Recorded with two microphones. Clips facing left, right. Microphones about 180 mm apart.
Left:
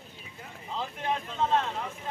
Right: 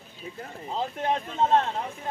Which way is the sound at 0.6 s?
40° right (ahead or behind).